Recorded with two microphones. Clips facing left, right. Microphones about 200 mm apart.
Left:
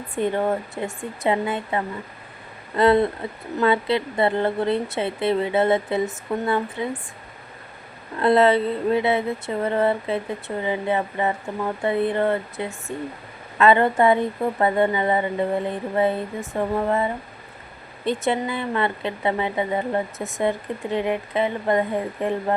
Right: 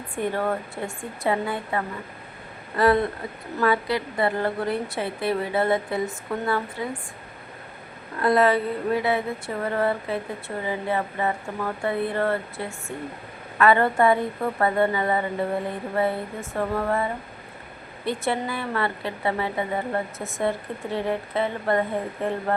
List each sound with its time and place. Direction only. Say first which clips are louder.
0.2 s speech: left 3 dB; 20° left (ahead or behind)
8.2 s speech: left 3 dB; 25° left (ahead or behind)